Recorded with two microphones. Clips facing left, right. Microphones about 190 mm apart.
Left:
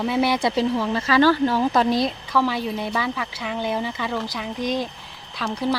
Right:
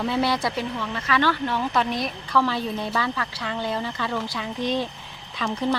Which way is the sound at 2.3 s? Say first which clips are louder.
Right 2 dB; 10° left (ahead or behind).